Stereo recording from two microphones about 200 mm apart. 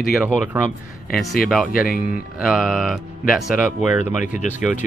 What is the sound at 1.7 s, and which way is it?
Speech, 45° left (ahead or behind).